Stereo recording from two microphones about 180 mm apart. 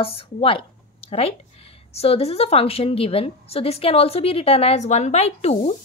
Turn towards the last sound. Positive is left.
turn(degrees=35)  # may be behind; listen again after turning